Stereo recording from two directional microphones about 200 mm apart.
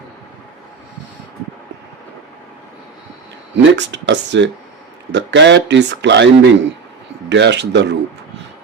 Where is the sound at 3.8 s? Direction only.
60° right (ahead or behind).